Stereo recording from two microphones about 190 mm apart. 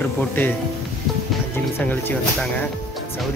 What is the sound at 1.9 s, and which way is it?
Speech, 10° left (ahead or behind).